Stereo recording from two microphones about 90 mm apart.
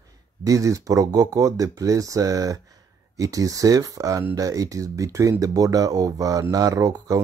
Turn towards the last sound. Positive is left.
turn(degrees=-40)  # may be behind; listen again after turning